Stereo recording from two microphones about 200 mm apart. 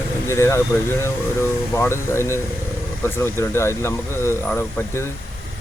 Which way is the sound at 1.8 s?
15° left (ahead or behind).